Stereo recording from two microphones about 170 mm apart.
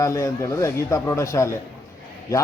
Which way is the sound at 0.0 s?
20° left (ahead or behind).